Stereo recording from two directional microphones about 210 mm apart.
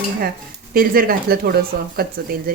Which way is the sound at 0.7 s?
45° right (ahead or behind).